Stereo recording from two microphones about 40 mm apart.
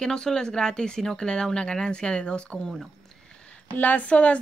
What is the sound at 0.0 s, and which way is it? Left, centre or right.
Speech, centre.